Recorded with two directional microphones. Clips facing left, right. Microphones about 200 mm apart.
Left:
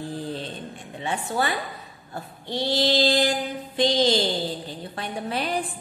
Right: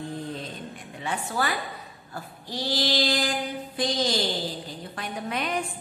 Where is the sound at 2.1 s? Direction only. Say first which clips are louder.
Left 5 dB; 25° left (ahead or behind).